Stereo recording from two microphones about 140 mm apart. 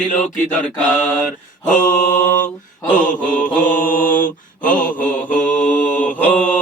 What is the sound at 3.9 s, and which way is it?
Mantra, 75° left (ahead or behind).